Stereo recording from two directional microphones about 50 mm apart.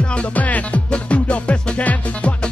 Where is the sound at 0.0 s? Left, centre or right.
Left.